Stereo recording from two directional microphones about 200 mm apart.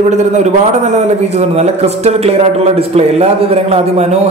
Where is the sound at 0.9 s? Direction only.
35° right (ahead or behind).